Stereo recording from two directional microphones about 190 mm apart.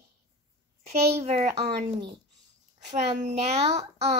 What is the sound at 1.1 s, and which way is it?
Speech, 35° right (ahead or behind).